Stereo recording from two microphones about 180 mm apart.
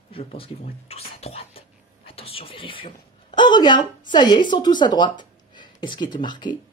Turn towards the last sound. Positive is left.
turn(degrees=25)  # may be behind; listen again after turning